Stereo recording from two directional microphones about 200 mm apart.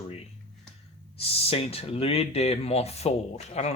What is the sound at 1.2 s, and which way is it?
Speech, 30° left (ahead or behind).